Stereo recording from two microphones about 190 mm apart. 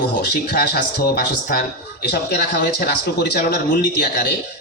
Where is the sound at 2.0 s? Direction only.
60° left (ahead or behind).